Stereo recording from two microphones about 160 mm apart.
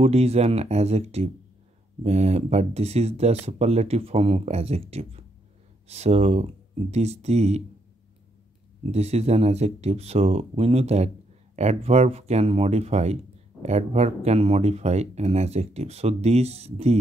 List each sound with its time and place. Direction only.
0.0 s speech: 40° right (ahead or behind)
8.9 s speech: 40° right (ahead or behind)